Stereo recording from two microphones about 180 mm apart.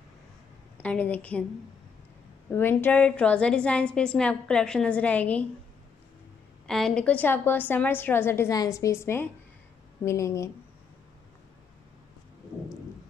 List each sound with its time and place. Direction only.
0.7 s a woman's voice: 10° left (ahead or behind)
2.5 s a woman's voice: 10° left (ahead or behind)
6.7 s a woman's voice: 5° left (ahead or behind)